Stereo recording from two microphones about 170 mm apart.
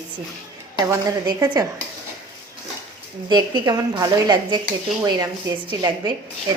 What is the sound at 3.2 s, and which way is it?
A woman's voice, 25° right (ahead or behind).